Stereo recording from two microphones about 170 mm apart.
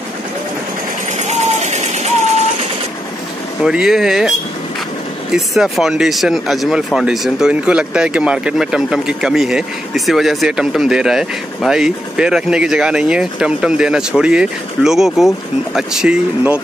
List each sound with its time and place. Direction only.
1.1 s vehicle: 40° right (ahead or behind)
3.6 s speech: 5° right (ahead or behind)
5.3 s speech: centre (ahead or behind)